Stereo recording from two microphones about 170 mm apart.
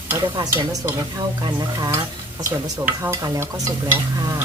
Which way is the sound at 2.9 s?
15° right (ahead or behind).